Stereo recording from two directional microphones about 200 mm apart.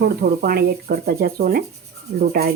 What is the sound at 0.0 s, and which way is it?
Speech, 50° right (ahead or behind).